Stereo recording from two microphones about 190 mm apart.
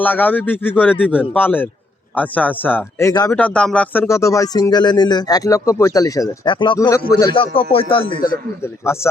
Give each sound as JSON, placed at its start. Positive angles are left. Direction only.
{"t": 0.0, "sound": "speech", "side_deg": 10}
{"t": 3.3, "sound": "speech", "side_deg": 5}
{"t": 8.6, "sound": "speech", "side_deg": 15}